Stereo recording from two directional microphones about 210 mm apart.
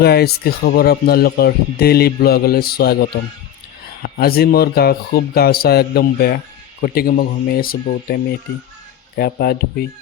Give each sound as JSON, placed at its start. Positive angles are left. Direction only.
{"t": 0.0, "sound": "speech", "side_deg": 50}